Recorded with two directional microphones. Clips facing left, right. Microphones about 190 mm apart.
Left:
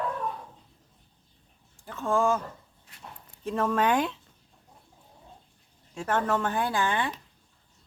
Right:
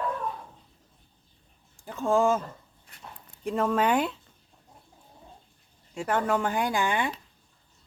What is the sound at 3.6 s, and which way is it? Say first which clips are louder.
Speech: even; 10° right (ahead or behind).